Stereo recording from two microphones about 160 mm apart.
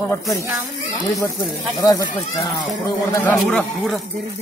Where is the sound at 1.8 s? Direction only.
25° left (ahead or behind).